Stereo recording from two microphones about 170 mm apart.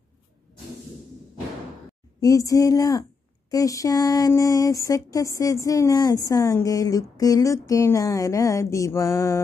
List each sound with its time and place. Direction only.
2.1 s a woman's voice: 20° left (ahead or behind)